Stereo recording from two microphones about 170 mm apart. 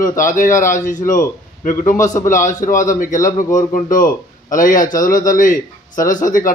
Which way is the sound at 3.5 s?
50° left (ahead or behind).